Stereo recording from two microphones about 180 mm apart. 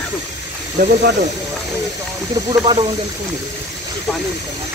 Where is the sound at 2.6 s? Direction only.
30° right (ahead or behind).